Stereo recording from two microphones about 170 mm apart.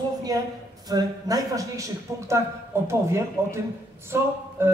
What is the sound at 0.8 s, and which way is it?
A man's voice, 20° right (ahead or behind).